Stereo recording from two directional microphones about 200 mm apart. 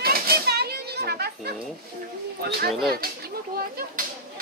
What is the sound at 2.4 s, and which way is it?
Speech, 50° right (ahead or behind).